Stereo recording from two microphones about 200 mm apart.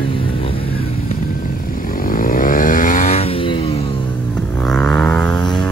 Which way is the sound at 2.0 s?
45° left (ahead or behind).